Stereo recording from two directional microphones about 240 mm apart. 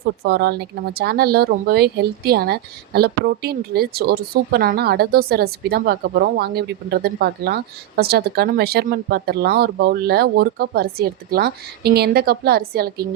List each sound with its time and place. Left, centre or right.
0.0 s speech: right